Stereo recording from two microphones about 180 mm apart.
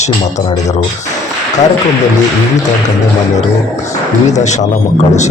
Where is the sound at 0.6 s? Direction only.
40° left (ahead or behind).